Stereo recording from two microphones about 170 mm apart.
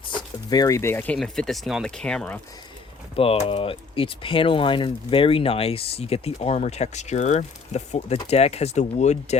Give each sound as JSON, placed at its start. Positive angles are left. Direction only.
{"t": 0.1, "sound": "speech", "side_deg": 25}
{"t": 3.2, "sound": "speech", "side_deg": 35}